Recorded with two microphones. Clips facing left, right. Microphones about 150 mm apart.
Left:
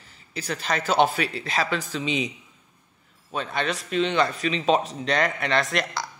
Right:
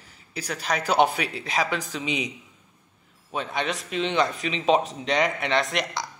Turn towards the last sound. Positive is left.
turn(degrees=-15)  # may be behind; listen again after turning